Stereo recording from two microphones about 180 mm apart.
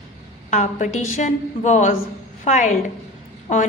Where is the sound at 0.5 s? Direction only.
40° left (ahead or behind).